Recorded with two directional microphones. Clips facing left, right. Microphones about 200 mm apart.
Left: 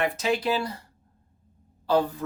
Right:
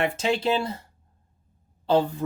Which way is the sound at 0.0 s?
30° right (ahead or behind).